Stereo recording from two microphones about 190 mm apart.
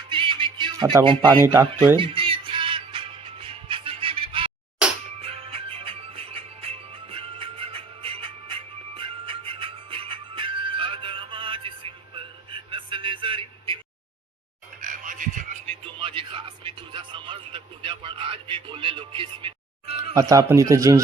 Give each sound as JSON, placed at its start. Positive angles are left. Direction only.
{"t": 0.1, "sound": "music", "side_deg": -25}
{"t": 14.8, "sound": "frog", "side_deg": -45}
{"t": 15.8, "sound": "music", "side_deg": -30}
{"t": 20.3, "sound": "speech", "side_deg": -15}